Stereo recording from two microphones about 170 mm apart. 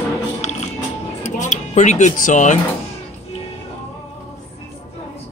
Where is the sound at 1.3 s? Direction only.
45° left (ahead or behind).